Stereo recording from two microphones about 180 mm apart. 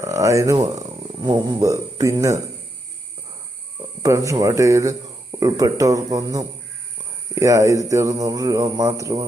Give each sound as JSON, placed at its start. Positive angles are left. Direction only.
{"t": 0.0, "sound": "speech", "side_deg": -15}
{"t": 4.0, "sound": "speech", "side_deg": -20}